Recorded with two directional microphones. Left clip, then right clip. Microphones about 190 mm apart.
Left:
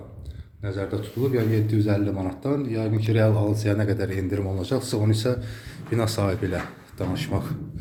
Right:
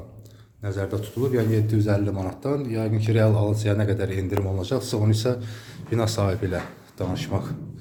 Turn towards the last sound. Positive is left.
turn(degrees=0)  # may be behind; listen again after turning